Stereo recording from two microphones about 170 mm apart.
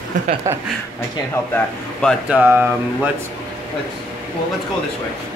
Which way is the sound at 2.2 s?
10° right (ahead or behind).